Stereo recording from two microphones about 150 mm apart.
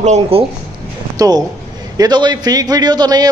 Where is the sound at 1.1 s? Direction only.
25° right (ahead or behind).